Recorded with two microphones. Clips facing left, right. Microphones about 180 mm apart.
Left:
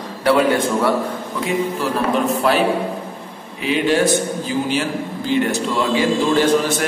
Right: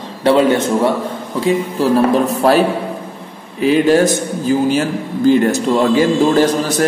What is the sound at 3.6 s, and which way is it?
A man's voice, 40° right (ahead or behind).